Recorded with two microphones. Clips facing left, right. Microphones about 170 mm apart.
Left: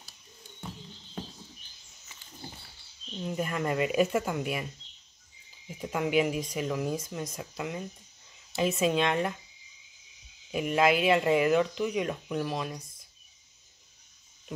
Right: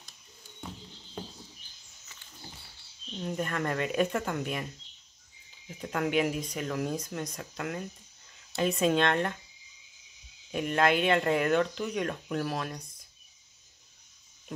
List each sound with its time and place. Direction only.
3.2 s speech: 5° left (ahead or behind)
5.7 s speech: 5° left (ahead or behind)
10.5 s speech: 5° left (ahead or behind)